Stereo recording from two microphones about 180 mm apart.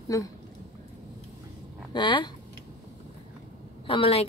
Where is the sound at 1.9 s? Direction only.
25° left (ahead or behind).